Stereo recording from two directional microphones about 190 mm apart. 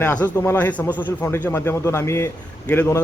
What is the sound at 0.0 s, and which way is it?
A man's voice, 10° left (ahead or behind).